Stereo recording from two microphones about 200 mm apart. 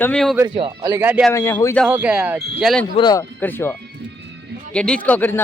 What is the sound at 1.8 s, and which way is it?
Speech, 5° right (ahead or behind).